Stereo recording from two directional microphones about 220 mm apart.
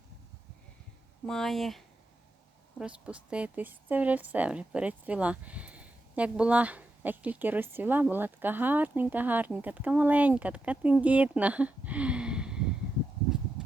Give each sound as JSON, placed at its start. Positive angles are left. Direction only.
{"t": 1.3, "sound": "a woman's voice", "side_deg": 0}
{"t": 13.6, "sound": "horse", "side_deg": -5}